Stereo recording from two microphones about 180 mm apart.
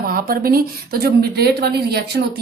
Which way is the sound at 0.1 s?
55° right (ahead or behind).